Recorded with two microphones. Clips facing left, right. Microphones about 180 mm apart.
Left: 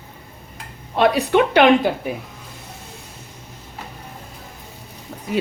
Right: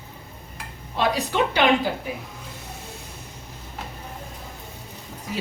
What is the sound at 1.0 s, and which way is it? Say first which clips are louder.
Speech: left 7 dB; 60° left (ahead or behind).